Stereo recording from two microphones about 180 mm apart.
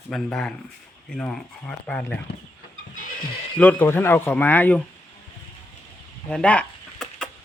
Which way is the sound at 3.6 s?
10° left (ahead or behind).